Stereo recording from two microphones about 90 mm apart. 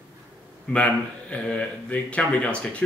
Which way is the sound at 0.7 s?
10° left (ahead or behind).